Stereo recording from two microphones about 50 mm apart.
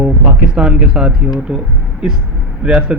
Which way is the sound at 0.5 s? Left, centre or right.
Centre.